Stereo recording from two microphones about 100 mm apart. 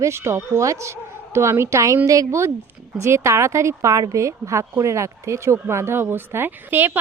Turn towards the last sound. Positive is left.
turn(degrees=-20)  # may be behind; listen again after turning